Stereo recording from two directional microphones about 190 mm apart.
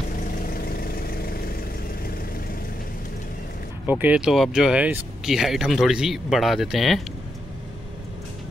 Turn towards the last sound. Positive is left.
turn(degrees=0)  # may be behind; listen again after turning